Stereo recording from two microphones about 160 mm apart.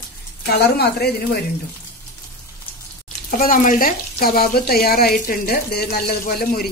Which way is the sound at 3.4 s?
60° left (ahead or behind).